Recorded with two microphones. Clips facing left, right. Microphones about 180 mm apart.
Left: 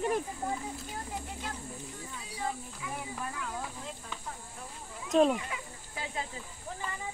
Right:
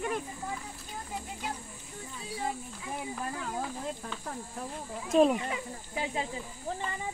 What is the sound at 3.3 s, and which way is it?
Speech, 35° right (ahead or behind).